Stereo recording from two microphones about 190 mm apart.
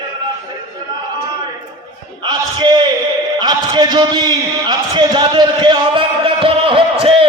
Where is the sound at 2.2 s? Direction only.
25° right (ahead or behind).